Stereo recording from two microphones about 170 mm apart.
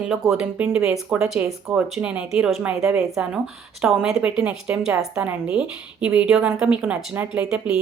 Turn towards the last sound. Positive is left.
turn(degrees=-5)  # may be behind; listen again after turning